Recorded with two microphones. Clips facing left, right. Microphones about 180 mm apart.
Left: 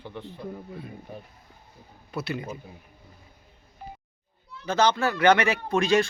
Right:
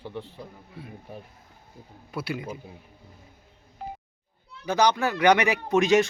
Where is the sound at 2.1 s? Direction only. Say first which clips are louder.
Even; 10° right (ahead or behind).